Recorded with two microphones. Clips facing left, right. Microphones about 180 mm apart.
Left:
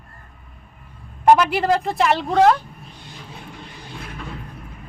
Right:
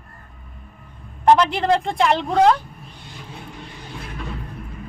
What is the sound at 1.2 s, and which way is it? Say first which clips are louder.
Speech: left 1 dB; 10° left (ahead or behind).